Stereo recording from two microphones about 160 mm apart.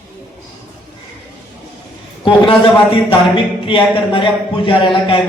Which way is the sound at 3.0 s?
30° left (ahead or behind).